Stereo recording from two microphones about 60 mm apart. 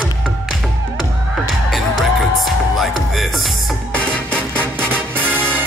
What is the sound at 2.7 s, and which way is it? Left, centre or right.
Music, centre.